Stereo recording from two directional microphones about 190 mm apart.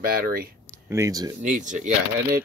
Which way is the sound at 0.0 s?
50° right (ahead or behind).